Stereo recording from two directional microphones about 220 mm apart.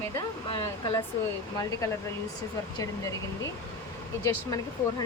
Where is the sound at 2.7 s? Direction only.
15° left (ahead or behind).